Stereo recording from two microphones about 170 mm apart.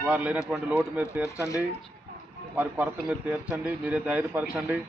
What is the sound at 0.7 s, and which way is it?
Speech, 10° right (ahead or behind).